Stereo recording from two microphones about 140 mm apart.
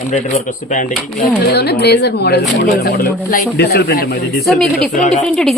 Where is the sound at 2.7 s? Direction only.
90° left.